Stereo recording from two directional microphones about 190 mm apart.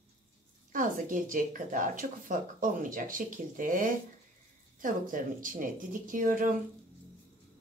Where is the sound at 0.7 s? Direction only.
45° right (ahead or behind).